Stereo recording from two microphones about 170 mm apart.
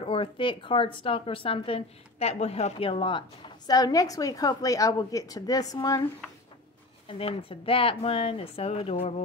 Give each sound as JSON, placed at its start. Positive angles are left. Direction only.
{"t": 0.0, "sound": "speech", "side_deg": 30}
{"t": 7.1, "sound": "a woman's voice", "side_deg": 35}